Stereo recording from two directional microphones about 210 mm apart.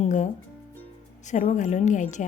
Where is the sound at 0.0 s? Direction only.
35° left (ahead or behind).